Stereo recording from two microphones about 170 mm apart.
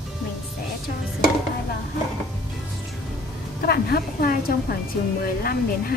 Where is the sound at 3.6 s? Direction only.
65° left (ahead or behind).